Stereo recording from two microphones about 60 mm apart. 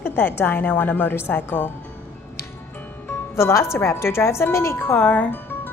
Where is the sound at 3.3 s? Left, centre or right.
Left.